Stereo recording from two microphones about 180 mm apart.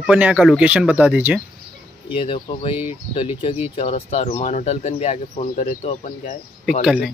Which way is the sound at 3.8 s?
35° left (ahead or behind).